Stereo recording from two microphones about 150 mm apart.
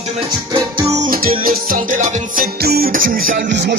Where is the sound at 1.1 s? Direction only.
75° right (ahead or behind).